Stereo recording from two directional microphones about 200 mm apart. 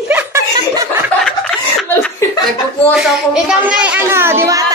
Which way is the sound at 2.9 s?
5° right (ahead or behind).